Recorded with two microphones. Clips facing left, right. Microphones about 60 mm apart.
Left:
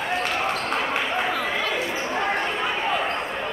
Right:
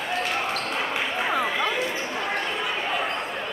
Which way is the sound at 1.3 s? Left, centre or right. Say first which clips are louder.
Right 1 dB; centre.